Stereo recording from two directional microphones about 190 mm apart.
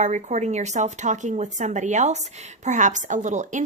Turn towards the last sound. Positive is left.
turn(degrees=-40)  # may be behind; listen again after turning